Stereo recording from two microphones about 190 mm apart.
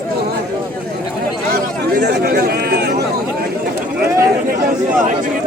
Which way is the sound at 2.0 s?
60° right (ahead or behind).